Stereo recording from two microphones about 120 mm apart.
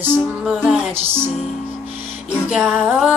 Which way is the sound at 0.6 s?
5° right (ahead or behind).